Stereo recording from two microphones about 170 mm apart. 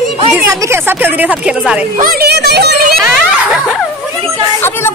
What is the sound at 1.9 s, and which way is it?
Speech, 60° right (ahead or behind).